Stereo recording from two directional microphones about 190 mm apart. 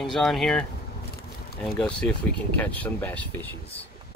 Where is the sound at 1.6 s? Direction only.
5° left (ahead or behind).